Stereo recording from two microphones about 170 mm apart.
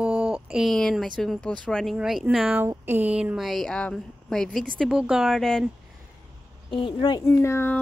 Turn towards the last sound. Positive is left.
turn(degrees=15)  # may be behind; listen again after turning